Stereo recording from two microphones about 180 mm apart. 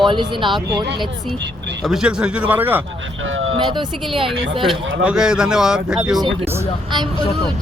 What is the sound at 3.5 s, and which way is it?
Speech, 25° right (ahead or behind).